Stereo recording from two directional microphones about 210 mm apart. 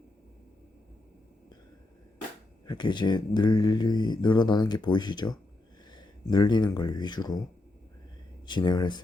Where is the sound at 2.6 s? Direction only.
20° left (ahead or behind).